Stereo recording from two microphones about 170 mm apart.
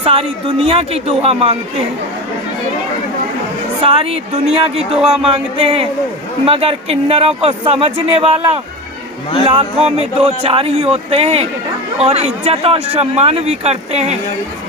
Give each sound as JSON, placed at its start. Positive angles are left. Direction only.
{"t": 0.0, "sound": "a man's voice", "side_deg": -35}
{"t": 3.8, "sound": "a man's voice", "side_deg": -35}